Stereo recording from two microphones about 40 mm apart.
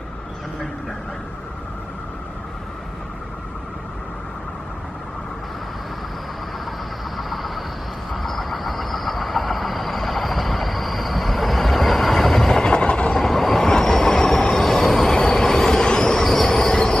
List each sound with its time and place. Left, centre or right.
7.2 s vehicle: centre
12.6 s train: left
13.1 s train: centre